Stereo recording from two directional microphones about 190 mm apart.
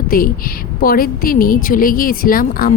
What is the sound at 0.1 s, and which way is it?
A woman's voice, 50° left (ahead or behind).